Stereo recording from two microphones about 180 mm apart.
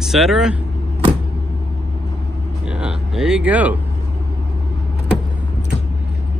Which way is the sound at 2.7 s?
5° right (ahead or behind).